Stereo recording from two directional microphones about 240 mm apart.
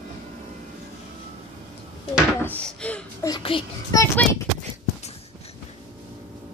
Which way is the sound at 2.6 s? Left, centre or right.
Centre.